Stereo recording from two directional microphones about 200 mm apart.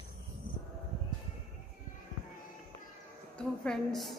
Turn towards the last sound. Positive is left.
turn(degrees=0)  # may be behind; listen again after turning